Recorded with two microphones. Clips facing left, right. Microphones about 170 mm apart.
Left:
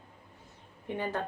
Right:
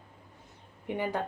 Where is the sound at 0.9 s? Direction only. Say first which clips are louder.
Right 2 dB; 15° right (ahead or behind).